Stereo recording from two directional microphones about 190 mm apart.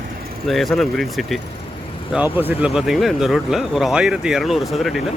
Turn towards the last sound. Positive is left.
turn(degrees=0)  # may be behind; listen again after turning